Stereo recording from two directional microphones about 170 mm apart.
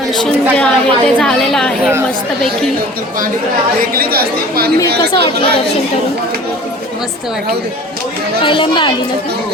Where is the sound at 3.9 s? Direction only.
60° right (ahead or behind).